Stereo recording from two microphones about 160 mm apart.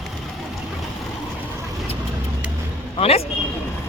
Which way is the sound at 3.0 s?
40° left (ahead or behind).